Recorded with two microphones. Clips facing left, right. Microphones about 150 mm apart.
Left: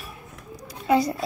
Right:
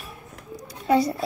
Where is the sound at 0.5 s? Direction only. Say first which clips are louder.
Even; 35° right (ahead or behind).